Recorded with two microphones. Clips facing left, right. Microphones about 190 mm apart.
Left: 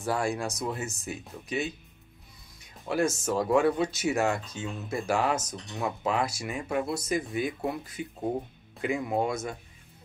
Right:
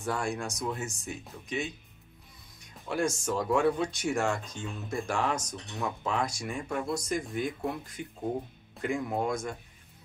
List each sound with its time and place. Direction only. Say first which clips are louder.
0.0 s speech: left 3 dB; 5° left (ahead or behind)
2.9 s speech: left 3 dB; 5° left (ahead or behind)